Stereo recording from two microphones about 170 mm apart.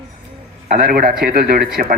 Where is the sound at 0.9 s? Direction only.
60° right (ahead or behind).